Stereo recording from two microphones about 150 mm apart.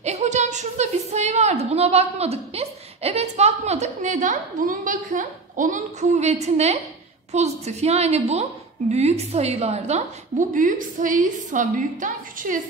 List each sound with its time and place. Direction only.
0.0 s a woman's voice: 50° right (ahead or behind)